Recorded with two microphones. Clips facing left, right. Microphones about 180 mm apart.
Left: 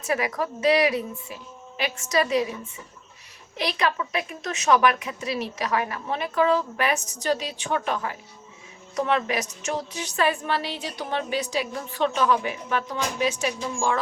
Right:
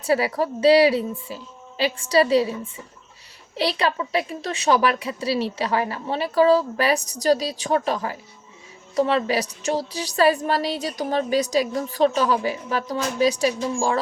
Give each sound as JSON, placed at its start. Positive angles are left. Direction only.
{"t": 0.0, "sound": "a woman's voice", "side_deg": -35}